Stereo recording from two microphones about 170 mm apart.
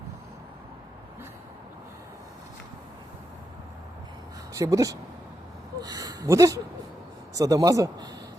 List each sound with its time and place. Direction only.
4.5 s speech: 20° right (ahead or behind)
5.8 s a sound: 25° right (ahead or behind)
7.3 s speech: 20° right (ahead or behind)